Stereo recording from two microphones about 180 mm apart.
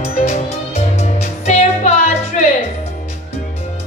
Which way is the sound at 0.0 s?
35° left (ahead or behind).